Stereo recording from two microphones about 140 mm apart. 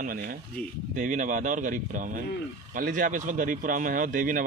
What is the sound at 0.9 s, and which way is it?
Speech, 70° right (ahead or behind).